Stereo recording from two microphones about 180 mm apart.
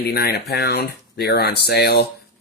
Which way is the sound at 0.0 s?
60° left (ahead or behind).